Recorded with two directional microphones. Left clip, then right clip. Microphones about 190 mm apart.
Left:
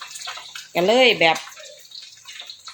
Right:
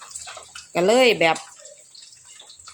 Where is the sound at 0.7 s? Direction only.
5° right (ahead or behind).